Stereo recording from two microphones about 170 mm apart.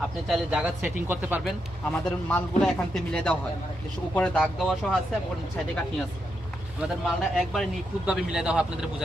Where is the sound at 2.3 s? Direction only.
5° left (ahead or behind).